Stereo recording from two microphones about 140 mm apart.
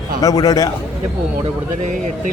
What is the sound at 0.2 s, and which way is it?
Speech, 25° left (ahead or behind).